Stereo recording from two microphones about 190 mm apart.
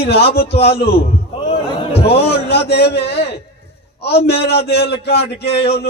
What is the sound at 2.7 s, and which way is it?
A man's voice, 60° left (ahead or behind).